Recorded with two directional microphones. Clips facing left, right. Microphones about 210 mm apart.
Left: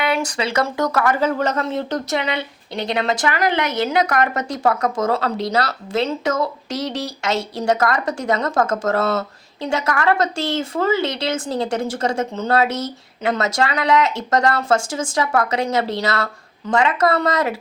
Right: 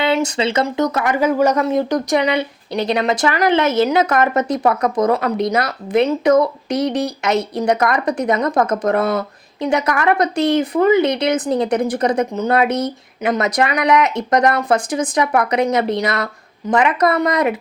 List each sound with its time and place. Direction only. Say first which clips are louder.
0.0 s a woman's voice: right 4 dB; 25° right (ahead or behind)